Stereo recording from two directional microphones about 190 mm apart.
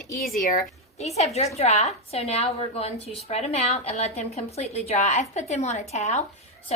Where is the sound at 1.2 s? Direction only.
35° left (ahead or behind).